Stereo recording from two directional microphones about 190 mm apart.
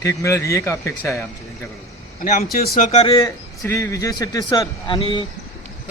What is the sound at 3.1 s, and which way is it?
A man's voice, 15° left (ahead or behind).